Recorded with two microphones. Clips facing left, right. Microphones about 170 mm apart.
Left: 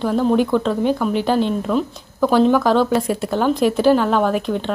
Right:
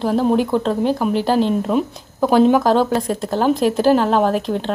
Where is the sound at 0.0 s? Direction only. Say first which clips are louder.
Even; 35° right (ahead or behind).